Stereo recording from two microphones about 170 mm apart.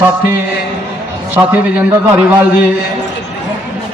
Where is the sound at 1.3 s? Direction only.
10° right (ahead or behind).